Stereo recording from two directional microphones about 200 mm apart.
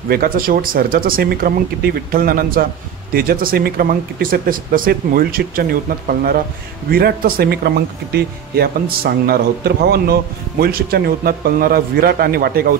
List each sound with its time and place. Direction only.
0.1 s speech: 50° right (ahead or behind)